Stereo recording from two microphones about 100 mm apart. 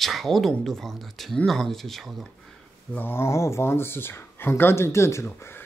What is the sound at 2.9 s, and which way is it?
Speech, 20° left (ahead or behind).